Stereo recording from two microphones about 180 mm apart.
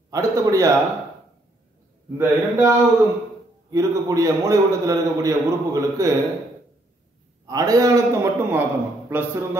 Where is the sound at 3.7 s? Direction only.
20° right (ahead or behind).